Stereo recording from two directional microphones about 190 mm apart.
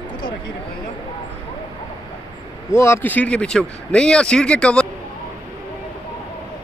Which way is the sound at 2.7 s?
15° left (ahead or behind).